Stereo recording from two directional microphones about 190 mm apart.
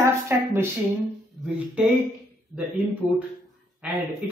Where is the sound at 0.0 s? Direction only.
15° right (ahead or behind).